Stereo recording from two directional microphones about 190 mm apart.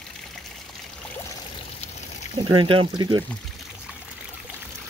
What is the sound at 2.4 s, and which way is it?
Speech, 25° right (ahead or behind).